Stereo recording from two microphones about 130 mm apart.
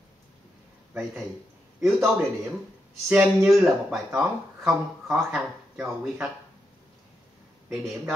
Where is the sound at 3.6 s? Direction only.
Centre (ahead or behind).